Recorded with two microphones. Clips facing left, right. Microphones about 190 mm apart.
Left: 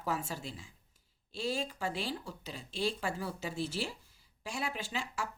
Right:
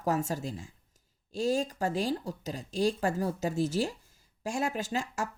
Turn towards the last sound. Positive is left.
turn(degrees=-45)  # may be behind; listen again after turning